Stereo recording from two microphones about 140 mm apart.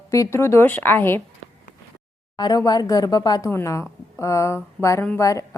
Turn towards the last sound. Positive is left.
turn(degrees=20)  # may be behind; listen again after turning